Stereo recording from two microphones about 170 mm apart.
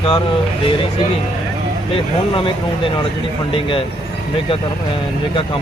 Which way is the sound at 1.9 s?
30° left (ahead or behind).